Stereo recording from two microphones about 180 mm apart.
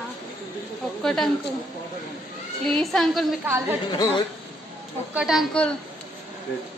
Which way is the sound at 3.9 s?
25° left (ahead or behind).